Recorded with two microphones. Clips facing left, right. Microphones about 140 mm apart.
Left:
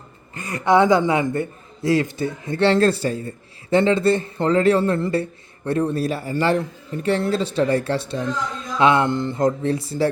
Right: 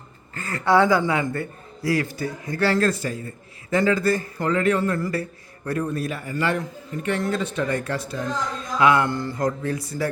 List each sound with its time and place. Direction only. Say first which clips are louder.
0.3 s a man's voice: left 2 dB; 15° left (ahead or behind)